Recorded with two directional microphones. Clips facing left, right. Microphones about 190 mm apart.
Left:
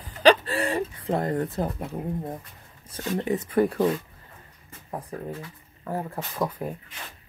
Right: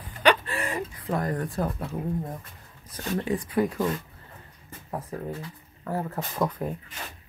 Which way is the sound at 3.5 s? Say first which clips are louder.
Left 4 dB; 55° left (ahead or behind).